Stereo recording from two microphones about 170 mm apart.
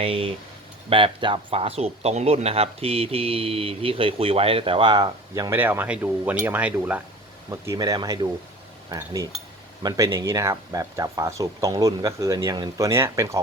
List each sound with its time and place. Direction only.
0.0 s speech: 35° right (ahead or behind); by 13.4 s 15° right (ahead or behind)